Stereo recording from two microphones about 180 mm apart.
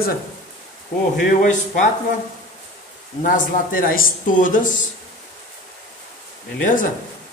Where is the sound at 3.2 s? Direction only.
50° left (ahead or behind).